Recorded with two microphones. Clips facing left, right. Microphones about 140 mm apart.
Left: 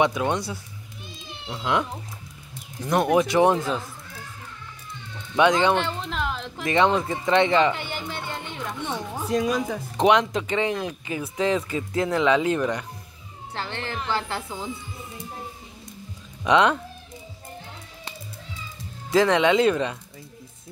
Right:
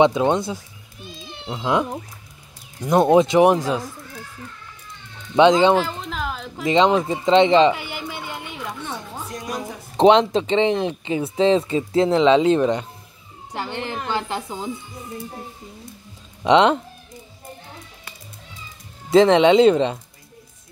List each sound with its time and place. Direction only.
0.0 s speech: 25° right (ahead or behind)
5.3 s speech: 25° right (ahead or behind)
5.8 s a sound: centre (ahead or behind)
6.6 s speech: 20° right (ahead or behind)
7.7 s a sound: 10° right (ahead or behind)
8.8 s music: 15° left (ahead or behind)
9.9 s speech: 25° right (ahead or behind)
16.4 s speech: 25° right (ahead or behind)
19.0 s speech: 25° right (ahead or behind)